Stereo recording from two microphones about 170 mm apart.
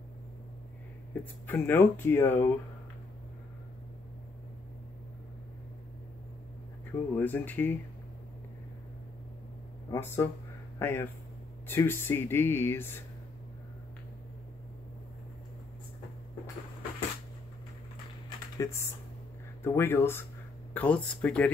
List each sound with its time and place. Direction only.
1.5 s speech: 10° left (ahead or behind)
6.9 s speech: 10° left (ahead or behind)
9.8 s speech: 15° left (ahead or behind)
18.6 s speech: 15° left (ahead or behind)